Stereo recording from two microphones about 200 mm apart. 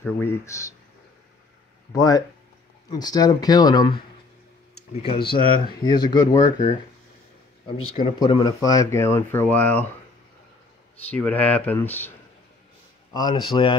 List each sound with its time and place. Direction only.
0.0 s speech: 10° left (ahead or behind)
2.0 s speech: 20° left (ahead or behind)
4.9 s speech: 25° left (ahead or behind)
8.2 s speech: 25° left (ahead or behind)
11.1 s speech: 5° left (ahead or behind)
13.1 s speech: 20° left (ahead or behind)